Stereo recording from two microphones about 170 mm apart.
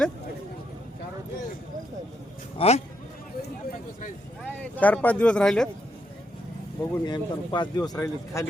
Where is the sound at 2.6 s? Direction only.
35° left (ahead or behind).